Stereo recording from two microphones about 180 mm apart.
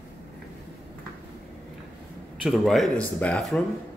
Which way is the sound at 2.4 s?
Centre (ahead or behind).